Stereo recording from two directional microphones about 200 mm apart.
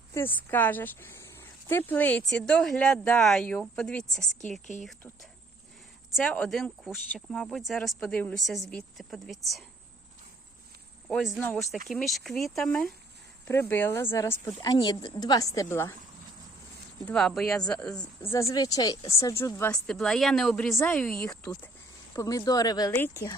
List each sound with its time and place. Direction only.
0.1 s speech: 10° left (ahead or behind)
6.1 s speech: 5° left (ahead or behind)
11.1 s speech: centre (ahead or behind)
17.1 s speech: 5° left (ahead or behind)